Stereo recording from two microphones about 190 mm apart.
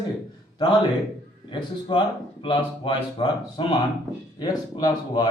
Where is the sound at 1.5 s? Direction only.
25° left (ahead or behind).